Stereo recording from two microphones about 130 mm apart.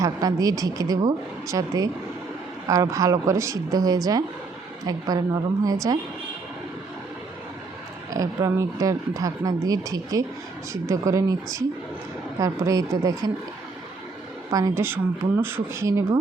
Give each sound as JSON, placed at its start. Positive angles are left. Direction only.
{"t": 0.0, "sound": "speech", "side_deg": -30}
{"t": 8.1, "sound": "speech", "side_deg": -25}
{"t": 14.5, "sound": "speech", "side_deg": -20}